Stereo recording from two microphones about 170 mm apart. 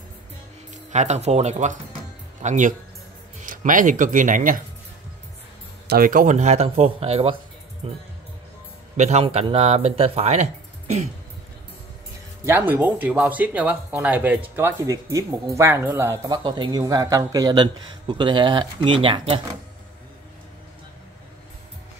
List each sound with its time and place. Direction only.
0.9 s speech: 40° right (ahead or behind)
5.9 s speech: 55° right (ahead or behind); by 11.1 s 40° right (ahead or behind)
12.4 s speech: 10° right (ahead or behind); by 19.4 s 30° right (ahead or behind)